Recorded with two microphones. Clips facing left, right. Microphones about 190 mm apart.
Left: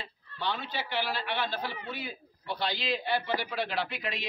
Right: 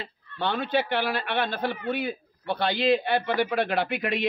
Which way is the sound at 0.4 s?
60° right (ahead or behind).